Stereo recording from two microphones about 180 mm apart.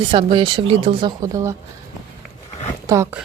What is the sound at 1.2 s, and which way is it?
Speech, 15° right (ahead or behind).